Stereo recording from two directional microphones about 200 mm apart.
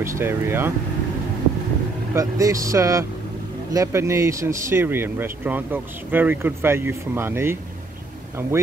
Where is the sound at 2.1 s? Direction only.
15° right (ahead or behind).